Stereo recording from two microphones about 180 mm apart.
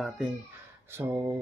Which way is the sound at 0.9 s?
15° right (ahead or behind).